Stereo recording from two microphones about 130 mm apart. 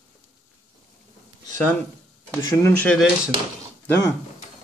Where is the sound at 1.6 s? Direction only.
10° left (ahead or behind).